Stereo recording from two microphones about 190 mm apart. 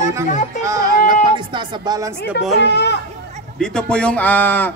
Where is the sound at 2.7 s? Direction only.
65° left (ahead or behind).